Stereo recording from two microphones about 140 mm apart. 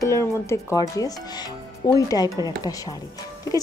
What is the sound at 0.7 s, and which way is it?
Speech, 25° left (ahead or behind).